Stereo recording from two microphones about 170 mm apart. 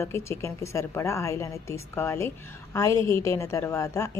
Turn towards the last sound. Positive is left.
turn(degrees=20)  # may be behind; listen again after turning